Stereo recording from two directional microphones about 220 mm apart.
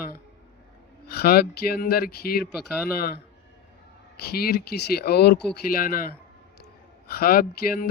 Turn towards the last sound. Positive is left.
turn(degrees=40)  # may be behind; listen again after turning